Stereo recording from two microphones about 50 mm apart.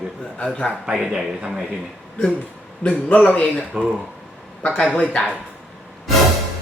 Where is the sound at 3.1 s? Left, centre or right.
Left.